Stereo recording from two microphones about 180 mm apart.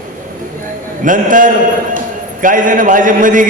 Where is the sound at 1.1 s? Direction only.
45° right (ahead or behind).